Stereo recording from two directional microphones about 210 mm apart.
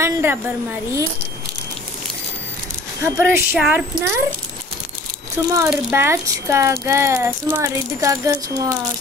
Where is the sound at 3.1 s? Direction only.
10° right (ahead or behind).